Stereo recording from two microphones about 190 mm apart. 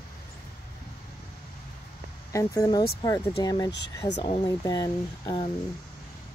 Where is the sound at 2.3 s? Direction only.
20° left (ahead or behind).